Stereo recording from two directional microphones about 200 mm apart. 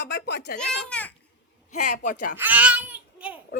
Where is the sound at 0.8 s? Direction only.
5° left (ahead or behind).